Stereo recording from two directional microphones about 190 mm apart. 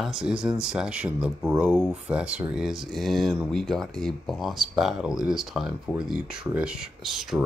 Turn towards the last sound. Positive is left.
turn(degrees=0)  # may be behind; listen again after turning